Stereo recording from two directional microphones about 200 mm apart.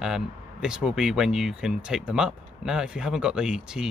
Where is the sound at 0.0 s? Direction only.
5° right (ahead or behind).